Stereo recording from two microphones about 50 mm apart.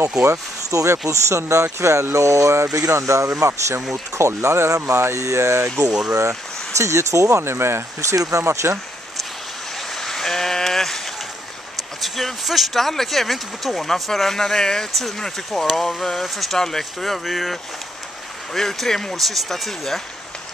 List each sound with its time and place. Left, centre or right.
0.7 s speech: right
1.1 s speech: right
2.1 s speech: right
3.9 s speech: right
6.8 s speech: right
7.5 s speech: right
9.9 s sheep: centre
12.0 s speech: centre
18.5 s speech: centre